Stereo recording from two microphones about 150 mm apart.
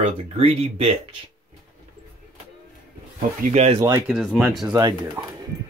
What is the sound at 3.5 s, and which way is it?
Speech, 45° right (ahead or behind).